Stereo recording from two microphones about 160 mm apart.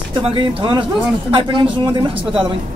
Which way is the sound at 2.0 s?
30° right (ahead or behind).